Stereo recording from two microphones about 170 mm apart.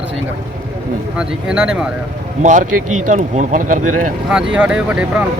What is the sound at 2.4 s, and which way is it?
Speech, 45° right (ahead or behind).